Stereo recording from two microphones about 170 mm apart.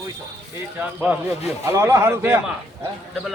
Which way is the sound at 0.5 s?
10° right (ahead or behind).